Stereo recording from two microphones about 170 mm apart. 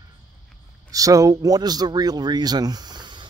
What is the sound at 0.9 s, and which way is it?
Speech, 20° right (ahead or behind).